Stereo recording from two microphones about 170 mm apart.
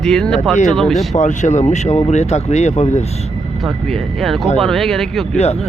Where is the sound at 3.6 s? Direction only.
Centre (ahead or behind).